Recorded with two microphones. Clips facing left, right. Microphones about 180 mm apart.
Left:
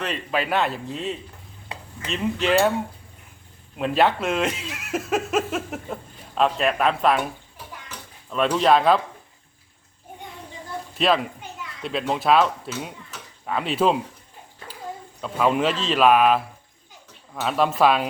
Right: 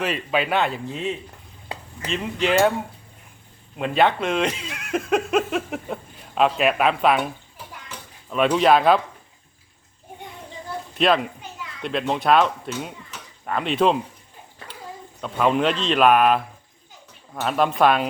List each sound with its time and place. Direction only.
0.0 s a man's voice: 5° right (ahead or behind)
3.8 s speech: centre (ahead or behind)
8.3 s a man's voice: 5° right (ahead or behind)
10.9 s a child's voice: centre (ahead or behind)
15.2 s a man's voice: centre (ahead or behind)
17.4 s a man's voice: centre (ahead or behind)